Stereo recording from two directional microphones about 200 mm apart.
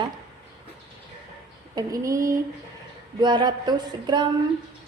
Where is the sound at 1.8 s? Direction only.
15° right (ahead or behind).